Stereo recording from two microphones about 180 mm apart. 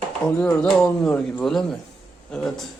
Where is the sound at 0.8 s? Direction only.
5° left (ahead or behind).